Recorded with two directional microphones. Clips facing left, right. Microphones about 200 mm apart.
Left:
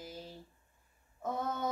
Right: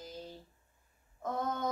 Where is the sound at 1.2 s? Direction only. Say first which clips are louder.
Right 1 dB; 10° left (ahead or behind).